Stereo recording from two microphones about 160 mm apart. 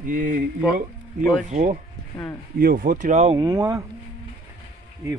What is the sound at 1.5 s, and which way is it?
Speech, 60° right (ahead or behind).